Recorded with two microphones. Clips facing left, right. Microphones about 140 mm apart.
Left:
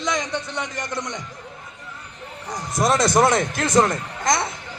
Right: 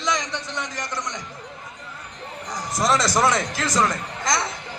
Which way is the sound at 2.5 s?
55° left (ahead or behind).